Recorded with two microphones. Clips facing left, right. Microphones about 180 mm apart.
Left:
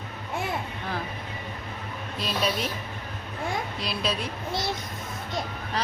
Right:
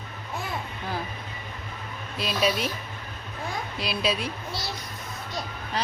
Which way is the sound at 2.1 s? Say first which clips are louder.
Right 2 dB; 5° right (ahead or behind).